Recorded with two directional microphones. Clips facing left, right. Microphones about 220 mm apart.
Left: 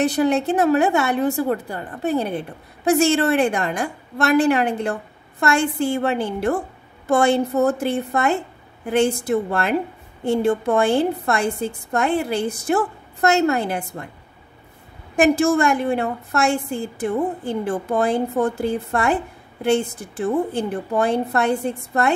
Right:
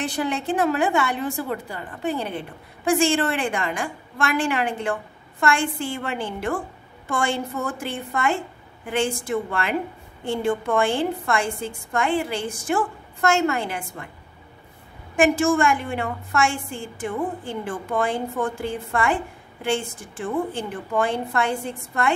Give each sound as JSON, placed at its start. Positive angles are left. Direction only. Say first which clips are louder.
{"t": 0.0, "sound": "a woman's voice", "louder": "left 7 dB", "side_deg": 40}
{"t": 3.1, "sound": "a woman's voice", "louder": "left 5 dB", "side_deg": 40}
{"t": 15.1, "sound": "a woman's voice", "louder": "left 3 dB", "side_deg": 40}